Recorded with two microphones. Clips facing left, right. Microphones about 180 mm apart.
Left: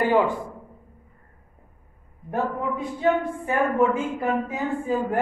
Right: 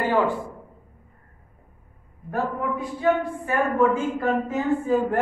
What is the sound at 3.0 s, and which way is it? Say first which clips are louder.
A man's voice: even; 20° left (ahead or behind).